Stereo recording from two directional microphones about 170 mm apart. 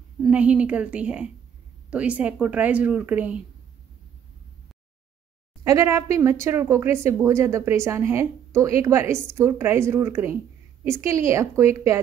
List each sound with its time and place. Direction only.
0.2 s speech: 5° right (ahead or behind)
5.6 s speech: 20° right (ahead or behind)